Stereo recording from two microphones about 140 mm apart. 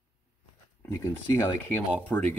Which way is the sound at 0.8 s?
15° left (ahead or behind).